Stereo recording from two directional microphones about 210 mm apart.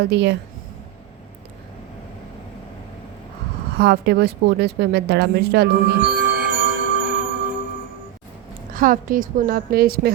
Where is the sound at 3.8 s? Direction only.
50° right (ahead or behind).